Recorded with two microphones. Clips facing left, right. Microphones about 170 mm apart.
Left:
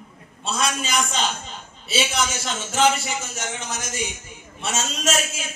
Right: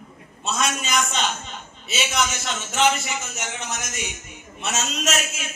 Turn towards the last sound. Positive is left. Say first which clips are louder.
# left 1 dB
turn(degrees=30)  # may be behind; listen again after turning